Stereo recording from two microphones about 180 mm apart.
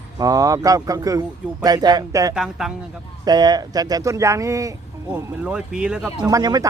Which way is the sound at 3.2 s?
20° right (ahead or behind).